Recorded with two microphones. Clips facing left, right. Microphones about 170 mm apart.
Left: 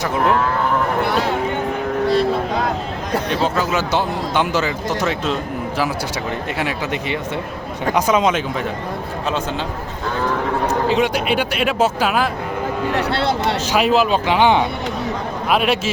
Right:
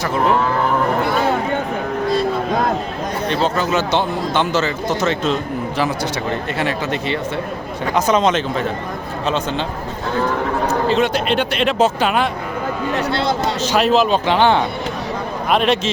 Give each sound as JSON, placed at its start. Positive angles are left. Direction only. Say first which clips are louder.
{"t": 3.4, "sound": "speech", "louder": "right 1 dB", "side_deg": 5}
{"t": 6.6, "sound": "speech", "louder": "right 1 dB", "side_deg": 10}
{"t": 10.8, "sound": "speech", "louder": "right 1 dB", "side_deg": 10}
{"t": 12.9, "sound": "speech", "louder": "right 1 dB", "side_deg": 65}
{"t": 13.7, "sound": "a man's voice", "louder": "right 2 dB", "side_deg": 10}